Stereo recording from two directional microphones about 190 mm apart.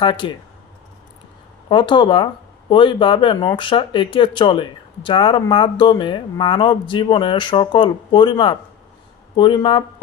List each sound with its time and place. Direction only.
0.0 s speech: 25° left (ahead or behind)
1.7 s speech: 25° left (ahead or behind)